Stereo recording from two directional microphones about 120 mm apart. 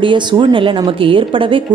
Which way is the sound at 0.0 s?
40° right (ahead or behind).